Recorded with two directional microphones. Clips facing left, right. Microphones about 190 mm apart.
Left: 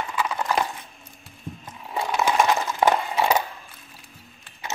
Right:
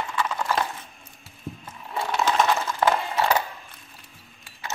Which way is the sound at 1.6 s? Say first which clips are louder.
Left 2 dB; 15° left (ahead or behind).